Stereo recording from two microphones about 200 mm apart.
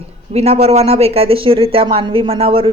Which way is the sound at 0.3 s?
30° right (ahead or behind).